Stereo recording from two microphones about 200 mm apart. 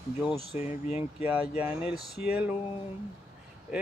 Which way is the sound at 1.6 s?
5° right (ahead or behind).